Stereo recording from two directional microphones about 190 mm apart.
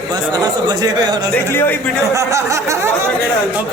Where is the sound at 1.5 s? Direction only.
10° left (ahead or behind).